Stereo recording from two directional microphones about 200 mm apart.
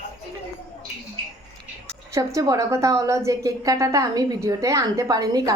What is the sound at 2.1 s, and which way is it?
A woman's voice, 15° right (ahead or behind).